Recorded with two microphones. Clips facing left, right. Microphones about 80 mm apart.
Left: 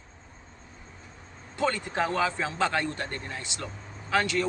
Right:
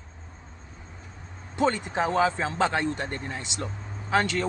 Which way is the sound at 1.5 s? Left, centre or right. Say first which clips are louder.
Right 3 dB; right.